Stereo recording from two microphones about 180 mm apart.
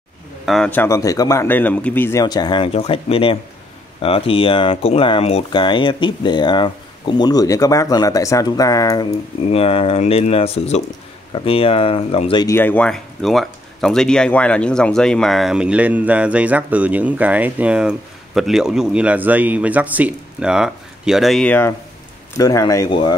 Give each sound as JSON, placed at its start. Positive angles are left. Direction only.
{"t": 0.5, "sound": "a man's voice", "side_deg": 5}
{"t": 9.5, "sound": "speech", "side_deg": 35}
{"t": 12.4, "sound": "speech", "side_deg": 10}